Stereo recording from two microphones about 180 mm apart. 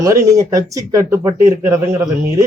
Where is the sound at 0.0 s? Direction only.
15° right (ahead or behind).